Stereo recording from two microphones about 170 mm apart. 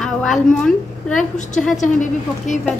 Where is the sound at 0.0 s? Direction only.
5° left (ahead or behind).